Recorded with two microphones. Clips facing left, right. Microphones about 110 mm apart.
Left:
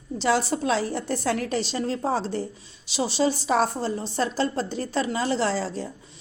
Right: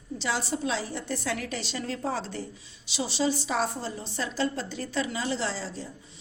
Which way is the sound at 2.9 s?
45° left (ahead or behind).